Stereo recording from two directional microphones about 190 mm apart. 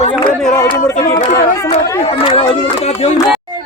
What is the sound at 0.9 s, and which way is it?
Speech, 40° left (ahead or behind).